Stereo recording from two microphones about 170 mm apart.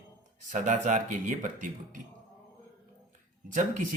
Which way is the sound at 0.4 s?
45° right (ahead or behind).